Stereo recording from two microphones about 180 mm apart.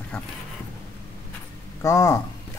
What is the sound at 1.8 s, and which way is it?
Speech, 15° left (ahead or behind).